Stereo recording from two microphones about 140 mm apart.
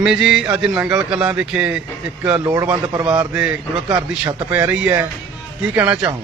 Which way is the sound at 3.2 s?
10° right (ahead or behind).